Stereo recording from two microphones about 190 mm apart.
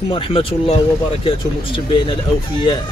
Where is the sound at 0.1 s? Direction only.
30° left (ahead or behind).